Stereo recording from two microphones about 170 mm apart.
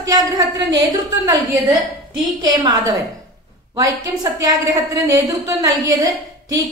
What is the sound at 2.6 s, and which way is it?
A woman's voice, 20° right (ahead or behind).